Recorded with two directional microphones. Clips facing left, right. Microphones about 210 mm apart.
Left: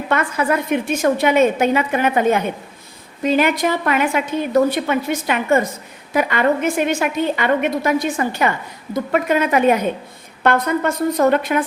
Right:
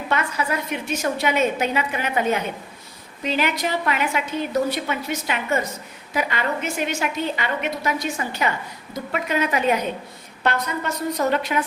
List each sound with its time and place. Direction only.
0.1 s a woman's voice: 50° left (ahead or behind)